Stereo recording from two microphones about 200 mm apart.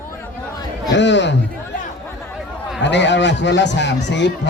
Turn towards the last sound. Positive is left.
turn(degrees=60)  # may be behind; listen again after turning